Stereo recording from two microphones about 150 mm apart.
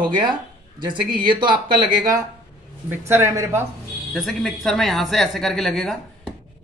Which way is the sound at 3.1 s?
20° right (ahead or behind).